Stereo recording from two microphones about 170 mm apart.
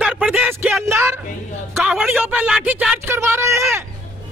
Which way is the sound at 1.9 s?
Centre (ahead or behind).